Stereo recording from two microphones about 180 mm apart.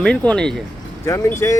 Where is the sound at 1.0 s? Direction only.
15° left (ahead or behind).